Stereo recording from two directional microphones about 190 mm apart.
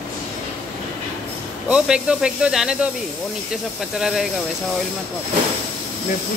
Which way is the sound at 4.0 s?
5° right (ahead or behind).